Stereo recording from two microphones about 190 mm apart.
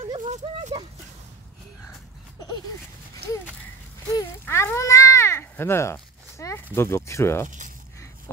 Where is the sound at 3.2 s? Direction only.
60° right (ahead or behind).